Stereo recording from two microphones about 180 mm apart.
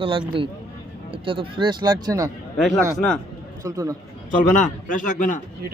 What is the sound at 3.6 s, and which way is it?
Speech, 20° right (ahead or behind).